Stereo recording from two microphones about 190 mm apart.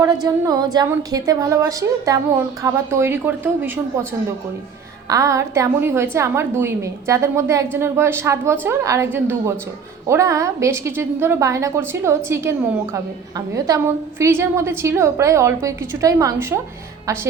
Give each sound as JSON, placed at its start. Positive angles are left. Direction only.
{"t": 0.0, "sound": "a woman's voice", "side_deg": -20}
{"t": 5.0, "sound": "a woman's voice", "side_deg": -15}